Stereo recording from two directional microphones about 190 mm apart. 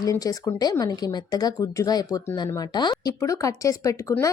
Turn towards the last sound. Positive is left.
turn(degrees=15)  # may be behind; listen again after turning